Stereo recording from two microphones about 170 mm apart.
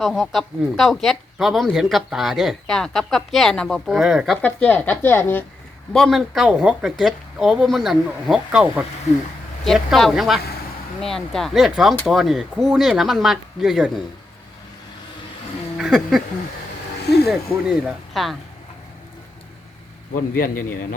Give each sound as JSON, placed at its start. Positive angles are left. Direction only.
{"t": 0.0, "sound": "speech", "side_deg": 0}
{"t": 4.4, "sound": "a woman's voice", "side_deg": 10}
{"t": 5.9, "sound": "speech", "side_deg": 0}
{"t": 15.8, "sound": "speech", "side_deg": 0}
{"t": 17.0, "sound": "a sound", "side_deg": 75}
{"t": 17.2, "sound": "speech", "side_deg": 0}
{"t": 20.1, "sound": "a man's voice", "side_deg": 55}